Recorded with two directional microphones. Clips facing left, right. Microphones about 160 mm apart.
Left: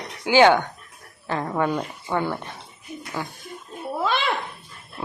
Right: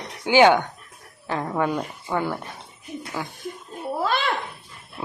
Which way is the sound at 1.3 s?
5° right (ahead or behind).